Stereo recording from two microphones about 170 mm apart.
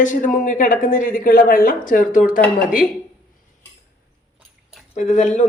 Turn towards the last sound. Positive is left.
turn(degrees=45)  # may be behind; listen again after turning